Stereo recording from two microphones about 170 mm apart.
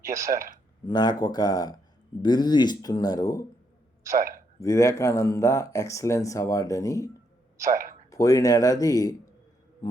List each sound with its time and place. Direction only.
0.1 s speech: 45° right (ahead or behind)
0.9 s speech: 25° left (ahead or behind)
4.6 s speech: 20° left (ahead or behind)
8.1 s speech: 20° left (ahead or behind)